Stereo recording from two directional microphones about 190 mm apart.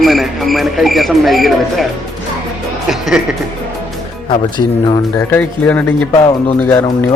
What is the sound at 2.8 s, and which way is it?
Music, centre (ahead or behind).